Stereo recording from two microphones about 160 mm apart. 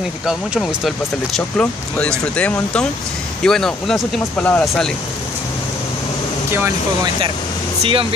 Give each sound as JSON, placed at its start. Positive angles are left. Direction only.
{"t": 0.3, "sound": "speech", "side_deg": 0}
{"t": 7.8, "sound": "speech", "side_deg": -35}